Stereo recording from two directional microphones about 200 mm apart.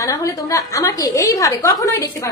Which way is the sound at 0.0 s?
15° left (ahead or behind).